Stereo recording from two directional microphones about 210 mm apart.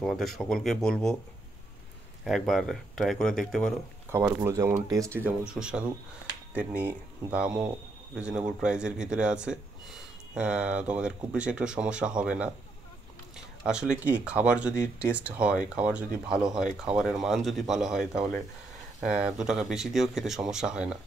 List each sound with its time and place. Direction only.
0.0 s speech: centre (ahead or behind)
2.2 s speech: centre (ahead or behind)
4.1 s speech: 10° right (ahead or behind)
5.5 s speech: 5° right (ahead or behind)
13.7 s speech: 5° right (ahead or behind)